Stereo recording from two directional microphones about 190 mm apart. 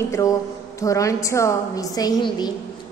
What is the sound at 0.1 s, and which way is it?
A woman's voice, 15° left (ahead or behind).